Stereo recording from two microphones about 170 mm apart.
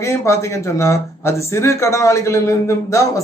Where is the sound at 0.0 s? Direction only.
15° left (ahead or behind).